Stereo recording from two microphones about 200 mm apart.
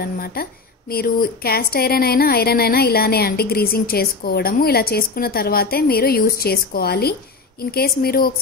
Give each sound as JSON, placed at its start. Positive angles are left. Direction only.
{"t": 0.0, "sound": "a woman's voice", "side_deg": 50}